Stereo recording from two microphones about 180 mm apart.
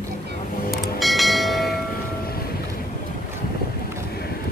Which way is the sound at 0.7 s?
Centre (ahead or behind).